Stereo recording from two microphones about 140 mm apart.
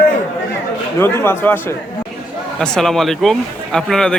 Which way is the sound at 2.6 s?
5° left (ahead or behind).